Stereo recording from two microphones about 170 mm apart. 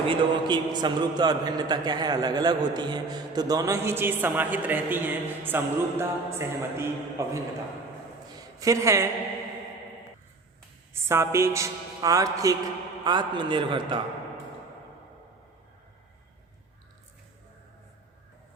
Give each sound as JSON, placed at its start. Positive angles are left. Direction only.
{"t": 0.1, "sound": "a man's voice", "side_deg": -30}
{"t": 8.5, "sound": "a woman's voice", "side_deg": -20}
{"t": 11.1, "sound": "a woman's voice", "side_deg": -15}